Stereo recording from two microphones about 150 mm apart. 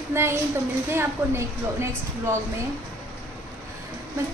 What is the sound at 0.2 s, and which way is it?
A woman's voice, 15° right (ahead or behind).